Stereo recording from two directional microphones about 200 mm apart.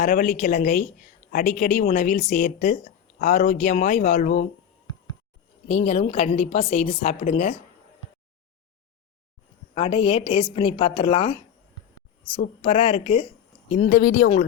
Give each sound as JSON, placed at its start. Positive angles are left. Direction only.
{"t": 0.0, "sound": "a woman's voice", "side_deg": 40}
{"t": 5.6, "sound": "a woman's voice", "side_deg": 35}
{"t": 9.7, "sound": "a woman's voice", "side_deg": 25}
{"t": 12.6, "sound": "a woman's voice", "side_deg": 30}
{"t": 13.7, "sound": "a woman's voice", "side_deg": 40}